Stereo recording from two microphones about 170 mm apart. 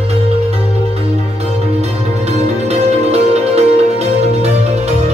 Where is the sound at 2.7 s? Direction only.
40° right (ahead or behind).